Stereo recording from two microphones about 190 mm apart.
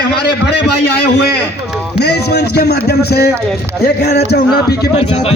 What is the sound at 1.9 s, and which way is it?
Music, 60° left (ahead or behind).